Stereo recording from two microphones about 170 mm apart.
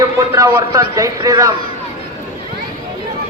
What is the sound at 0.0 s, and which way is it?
A man's voice, 20° right (ahead or behind).